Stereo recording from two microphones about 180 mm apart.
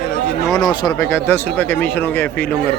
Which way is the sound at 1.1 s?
10° left (ahead or behind).